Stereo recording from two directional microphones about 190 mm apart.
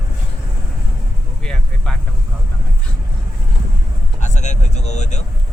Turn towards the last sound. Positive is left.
turn(degrees=35)  # may be behind; listen again after turning